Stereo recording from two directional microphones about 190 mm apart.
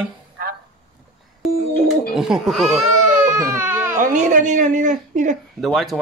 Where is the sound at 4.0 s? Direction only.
45° right (ahead or behind).